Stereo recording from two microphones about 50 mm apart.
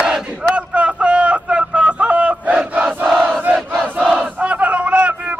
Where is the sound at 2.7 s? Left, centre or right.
Right.